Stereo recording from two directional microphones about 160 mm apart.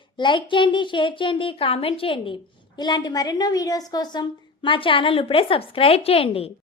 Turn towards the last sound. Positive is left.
turn(degrees=35)  # may be behind; listen again after turning